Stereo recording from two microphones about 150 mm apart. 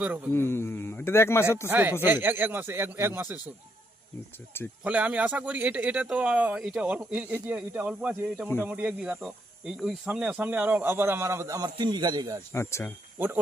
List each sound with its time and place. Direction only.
0.3 s a man's voice: 15° left (ahead or behind)
1.7 s speech: 10° right (ahead or behind)
4.8 s speech: 10° right (ahead or behind); by 12.4 s 25° right (ahead or behind)
12.5 s a man's voice: 15° left (ahead or behind)
13.1 s speech: 15° right (ahead or behind)